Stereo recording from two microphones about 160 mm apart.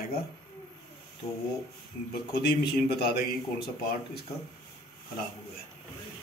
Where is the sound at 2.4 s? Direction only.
90° left.